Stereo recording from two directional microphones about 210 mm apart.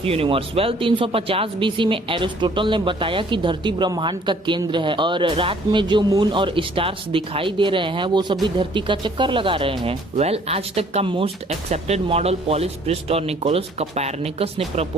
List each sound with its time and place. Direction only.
0.0 s speech: 25° right (ahead or behind)